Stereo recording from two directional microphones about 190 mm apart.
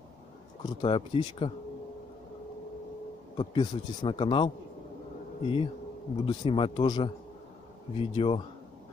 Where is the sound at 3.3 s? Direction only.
25° left (ahead or behind).